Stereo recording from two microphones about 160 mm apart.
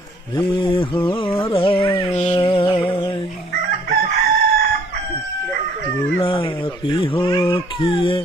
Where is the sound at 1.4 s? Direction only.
35° left (ahead or behind).